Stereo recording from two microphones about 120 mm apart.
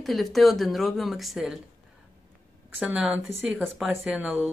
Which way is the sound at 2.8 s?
10° right (ahead or behind).